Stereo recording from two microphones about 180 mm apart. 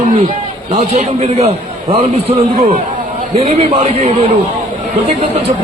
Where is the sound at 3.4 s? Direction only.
35° right (ahead or behind).